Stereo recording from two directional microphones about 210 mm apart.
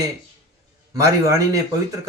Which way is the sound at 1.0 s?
15° right (ahead or behind).